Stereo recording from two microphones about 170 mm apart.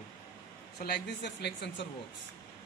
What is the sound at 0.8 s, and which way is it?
Speech, 75° left (ahead or behind).